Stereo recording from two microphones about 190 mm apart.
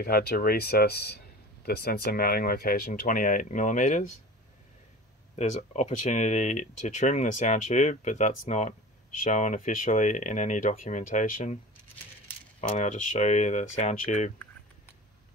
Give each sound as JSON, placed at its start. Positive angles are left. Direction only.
{"t": 0.0, "sound": "speech", "side_deg": 50}
{"t": 5.3, "sound": "speech", "side_deg": 35}
{"t": 12.5, "sound": "speech", "side_deg": 40}